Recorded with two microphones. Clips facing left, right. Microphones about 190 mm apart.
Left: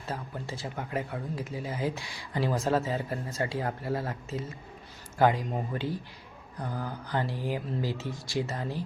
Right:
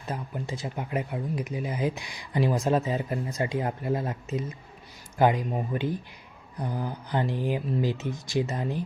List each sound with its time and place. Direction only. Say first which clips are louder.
0.0 s speech: right 3 dB; 15° right (ahead or behind)